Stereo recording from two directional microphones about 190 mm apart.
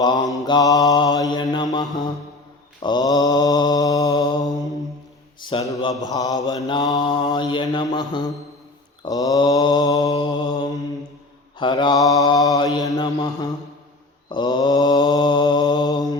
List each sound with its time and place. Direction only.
0.0 s mantra: 20° left (ahead or behind)
5.4 s speech: 25° left (ahead or behind)
6.1 s mantra: 20° left (ahead or behind)